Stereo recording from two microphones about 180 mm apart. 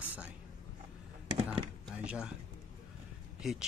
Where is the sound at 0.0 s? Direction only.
10° right (ahead or behind).